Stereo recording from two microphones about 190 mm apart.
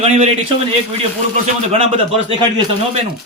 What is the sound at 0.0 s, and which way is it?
Speech, 35° right (ahead or behind).